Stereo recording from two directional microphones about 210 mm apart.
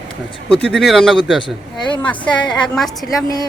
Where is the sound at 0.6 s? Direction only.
Centre (ahead or behind).